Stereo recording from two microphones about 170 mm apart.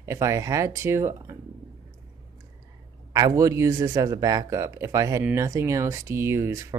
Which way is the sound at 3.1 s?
25° right (ahead or behind).